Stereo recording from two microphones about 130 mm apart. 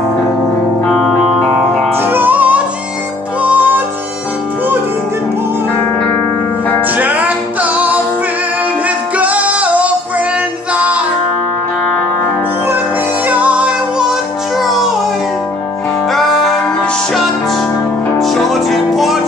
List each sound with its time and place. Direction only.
0.8 s music: centre (ahead or behind)
2.0 s music: 15° right (ahead or behind)
7.0 s music: 10° right (ahead or behind)
13.3 s music: 10° right (ahead or behind)
16.1 s music: centre (ahead or behind)
18.2 s music: centre (ahead or behind)